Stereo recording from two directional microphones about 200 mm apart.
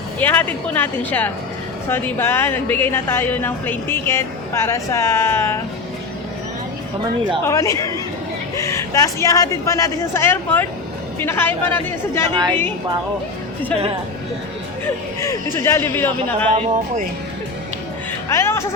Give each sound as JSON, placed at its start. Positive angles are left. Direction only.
{"t": 0.2, "sound": "speech", "side_deg": 10}
{"t": 7.4, "sound": "speech", "side_deg": 15}
{"t": 12.3, "sound": "a woman's voice", "side_deg": -25}
{"t": 15.2, "sound": "speech", "side_deg": 15}
{"t": 16.5, "sound": "speech", "side_deg": -35}
{"t": 18.3, "sound": "speech", "side_deg": 15}